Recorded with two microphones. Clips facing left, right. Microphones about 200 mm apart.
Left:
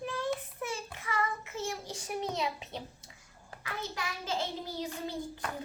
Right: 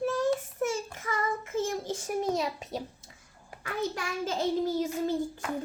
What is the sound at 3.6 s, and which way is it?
Child singing, 45° right (ahead or behind).